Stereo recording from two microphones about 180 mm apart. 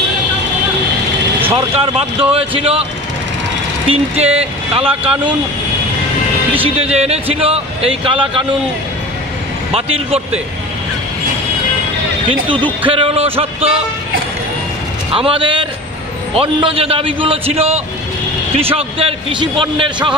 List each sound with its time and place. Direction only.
1.8 s a man's voice: 30° right (ahead or behind)
6.6 s a man's voice: 35° right (ahead or behind)
9.8 s a man's voice: 35° right (ahead or behind)
12.8 s a man's voice: 30° right (ahead or behind)
15.1 s a man's voice: 30° right (ahead or behind)